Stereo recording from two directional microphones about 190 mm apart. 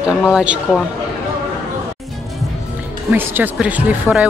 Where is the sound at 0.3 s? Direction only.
5° right (ahead or behind).